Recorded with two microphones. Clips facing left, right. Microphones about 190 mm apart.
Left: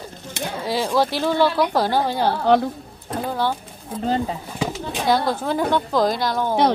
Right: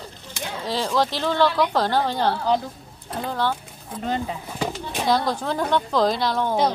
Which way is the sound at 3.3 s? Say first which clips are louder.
Left 1 dB; 10° left (ahead or behind).